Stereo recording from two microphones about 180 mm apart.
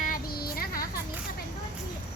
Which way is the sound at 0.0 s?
55° left (ahead or behind).